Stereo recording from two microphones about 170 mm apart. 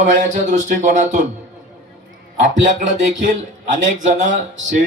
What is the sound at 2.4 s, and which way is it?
A man's voice, 45° right (ahead or behind).